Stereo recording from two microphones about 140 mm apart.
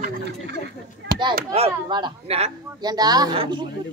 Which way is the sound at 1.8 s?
35° right (ahead or behind).